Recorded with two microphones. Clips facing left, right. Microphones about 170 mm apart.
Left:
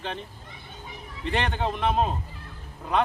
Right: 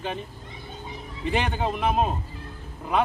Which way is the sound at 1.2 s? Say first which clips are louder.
Right 1 dB; 5° right (ahead or behind).